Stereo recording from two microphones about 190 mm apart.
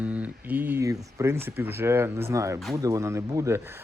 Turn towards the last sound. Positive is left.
turn(degrees=-10)  # may be behind; listen again after turning